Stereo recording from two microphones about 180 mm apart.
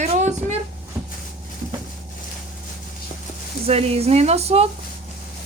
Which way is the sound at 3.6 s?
35° right (ahead or behind).